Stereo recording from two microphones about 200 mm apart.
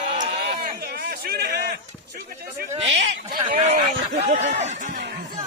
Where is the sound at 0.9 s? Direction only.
50° right (ahead or behind).